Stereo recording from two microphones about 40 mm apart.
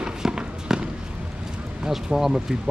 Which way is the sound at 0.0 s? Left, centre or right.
Centre.